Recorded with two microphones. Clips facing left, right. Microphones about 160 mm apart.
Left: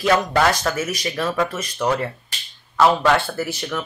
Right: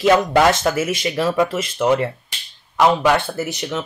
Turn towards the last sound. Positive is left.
turn(degrees=-20)  # may be behind; listen again after turning